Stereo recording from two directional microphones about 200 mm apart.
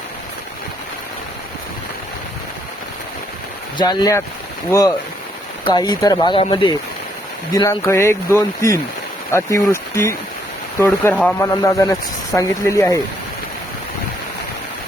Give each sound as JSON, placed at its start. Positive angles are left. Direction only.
{"t": 3.8, "sound": "speech", "side_deg": 20}
{"t": 5.6, "sound": "speech", "side_deg": 20}